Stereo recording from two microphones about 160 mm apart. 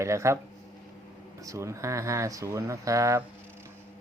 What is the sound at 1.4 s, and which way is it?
Speech, 20° right (ahead or behind).